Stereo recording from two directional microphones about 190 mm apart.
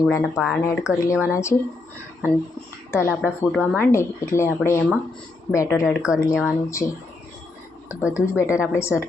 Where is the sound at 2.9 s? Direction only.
10° left (ahead or behind).